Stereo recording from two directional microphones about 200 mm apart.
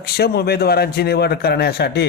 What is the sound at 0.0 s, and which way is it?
Speech, 50° left (ahead or behind).